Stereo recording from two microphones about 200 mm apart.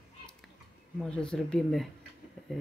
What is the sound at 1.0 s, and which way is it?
Speech, 5° left (ahead or behind).